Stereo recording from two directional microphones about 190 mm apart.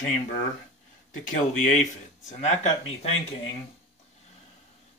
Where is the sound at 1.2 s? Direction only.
40° left (ahead or behind).